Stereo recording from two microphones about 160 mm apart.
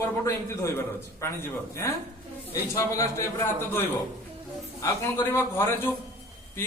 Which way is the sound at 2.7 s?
20° left (ahead or behind).